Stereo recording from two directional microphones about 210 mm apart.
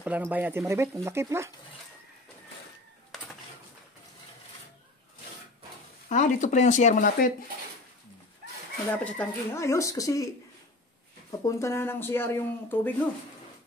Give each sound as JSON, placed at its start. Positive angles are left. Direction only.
{"t": 0.0, "sound": "speech", "side_deg": -5}
{"t": 6.0, "sound": "speech", "side_deg": 35}
{"t": 9.0, "sound": "speech", "side_deg": 10}
{"t": 11.4, "sound": "speech", "side_deg": 15}